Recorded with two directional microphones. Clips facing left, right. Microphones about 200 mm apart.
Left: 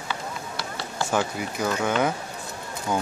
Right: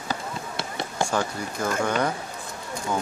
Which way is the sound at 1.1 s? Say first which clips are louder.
Left 1 dB; 5° left (ahead or behind).